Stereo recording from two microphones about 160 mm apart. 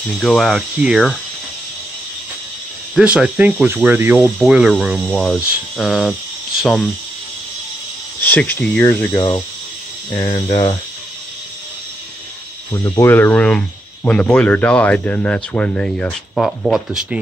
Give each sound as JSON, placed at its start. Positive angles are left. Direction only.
{"t": 0.2, "sound": "speech", "side_deg": 0}
{"t": 2.9, "sound": "speech", "side_deg": -5}
{"t": 8.2, "sound": "speech", "side_deg": 10}
{"t": 9.1, "sound": "speech", "side_deg": 25}
{"t": 12.8, "sound": "speech", "side_deg": 15}